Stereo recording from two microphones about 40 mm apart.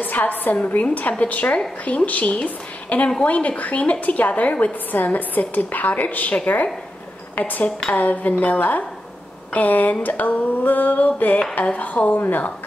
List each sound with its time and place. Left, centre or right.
0.0 s a woman's voice: left